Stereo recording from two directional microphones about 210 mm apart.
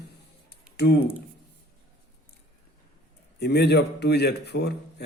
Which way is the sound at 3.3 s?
50° left (ahead or behind).